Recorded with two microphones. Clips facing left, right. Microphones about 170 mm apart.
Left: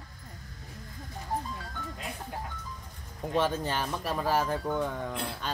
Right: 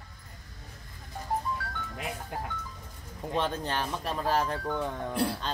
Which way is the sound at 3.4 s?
5° left (ahead or behind).